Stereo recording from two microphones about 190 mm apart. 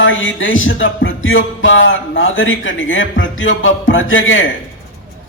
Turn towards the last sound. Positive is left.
turn(degrees=90)